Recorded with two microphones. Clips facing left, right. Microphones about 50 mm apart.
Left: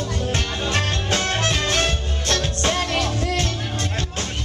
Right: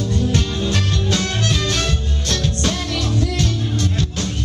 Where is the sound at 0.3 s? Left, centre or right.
Left.